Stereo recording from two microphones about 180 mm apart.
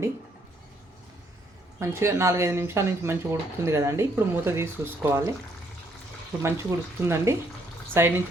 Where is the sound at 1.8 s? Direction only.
15° right (ahead or behind).